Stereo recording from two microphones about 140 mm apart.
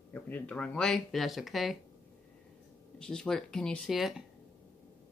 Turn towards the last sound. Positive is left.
turn(degrees=0)  # may be behind; listen again after turning